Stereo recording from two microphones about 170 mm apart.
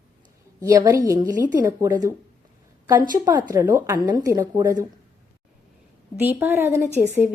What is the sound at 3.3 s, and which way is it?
Speech, 25° right (ahead or behind).